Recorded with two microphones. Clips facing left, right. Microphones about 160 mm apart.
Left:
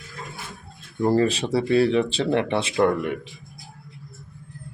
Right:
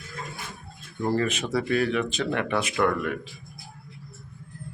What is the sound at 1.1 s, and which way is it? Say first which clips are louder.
Speech: left 4 dB; 30° left (ahead or behind).